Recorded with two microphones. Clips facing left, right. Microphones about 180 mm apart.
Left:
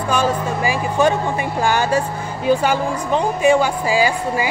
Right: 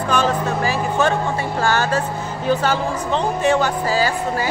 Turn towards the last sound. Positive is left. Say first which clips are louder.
# left 2 dB
turn(degrees=10)  # may be behind; listen again after turning